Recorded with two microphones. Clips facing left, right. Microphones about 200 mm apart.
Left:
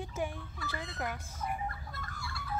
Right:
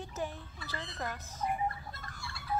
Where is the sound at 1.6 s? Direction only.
25° right (ahead or behind).